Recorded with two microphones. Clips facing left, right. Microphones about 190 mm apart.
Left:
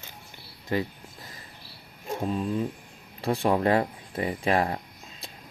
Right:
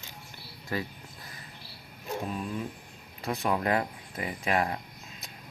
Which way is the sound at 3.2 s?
30° left (ahead or behind).